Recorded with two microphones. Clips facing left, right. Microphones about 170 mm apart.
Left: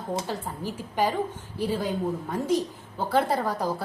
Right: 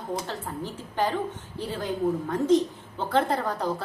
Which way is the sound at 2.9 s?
10° left (ahead or behind).